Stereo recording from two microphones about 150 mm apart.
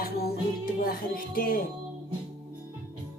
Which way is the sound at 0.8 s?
80° left.